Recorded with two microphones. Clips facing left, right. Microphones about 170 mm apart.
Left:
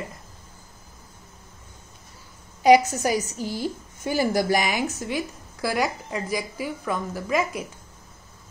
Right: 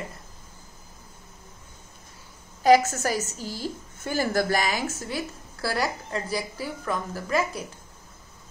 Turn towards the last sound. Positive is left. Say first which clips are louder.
# left 1 dB
turn(degrees=15)  # may be behind; listen again after turning